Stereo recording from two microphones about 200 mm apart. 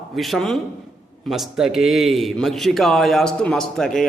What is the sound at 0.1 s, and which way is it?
A man's voice, centre (ahead or behind).